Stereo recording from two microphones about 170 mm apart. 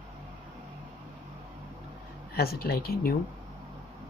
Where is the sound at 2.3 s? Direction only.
65° left (ahead or behind).